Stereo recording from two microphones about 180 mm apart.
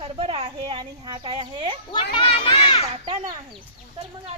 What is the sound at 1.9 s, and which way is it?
Speech, 25° left (ahead or behind).